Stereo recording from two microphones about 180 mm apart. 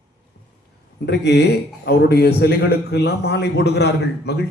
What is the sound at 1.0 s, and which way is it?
A man's voice, 70° left (ahead or behind).